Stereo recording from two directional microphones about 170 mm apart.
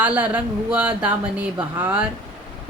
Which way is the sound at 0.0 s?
10° right (ahead or behind).